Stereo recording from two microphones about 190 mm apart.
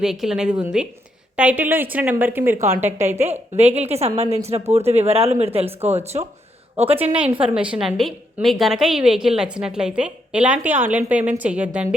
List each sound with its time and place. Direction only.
0.0 s a woman's voice: centre (ahead or behind)
3.5 s a woman's voice: 35° right (ahead or behind)
7.0 s a woman's voice: 10° right (ahead or behind)